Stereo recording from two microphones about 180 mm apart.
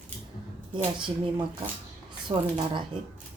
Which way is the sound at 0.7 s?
25° right (ahead or behind).